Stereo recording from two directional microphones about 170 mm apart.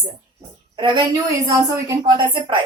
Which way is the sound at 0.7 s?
30° right (ahead or behind).